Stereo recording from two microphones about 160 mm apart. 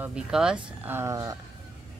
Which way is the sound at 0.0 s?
5° right (ahead or behind).